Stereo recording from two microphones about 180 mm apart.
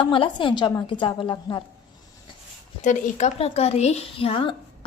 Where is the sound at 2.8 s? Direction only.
40° left (ahead or behind).